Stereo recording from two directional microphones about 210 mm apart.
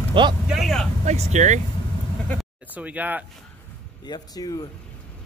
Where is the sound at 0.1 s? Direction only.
20° right (ahead or behind).